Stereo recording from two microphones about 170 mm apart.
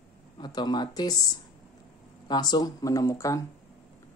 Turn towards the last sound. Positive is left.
turn(degrees=20)  # may be behind; listen again after turning